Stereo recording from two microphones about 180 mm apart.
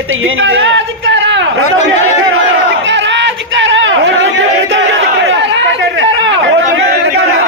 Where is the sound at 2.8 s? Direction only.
90° right.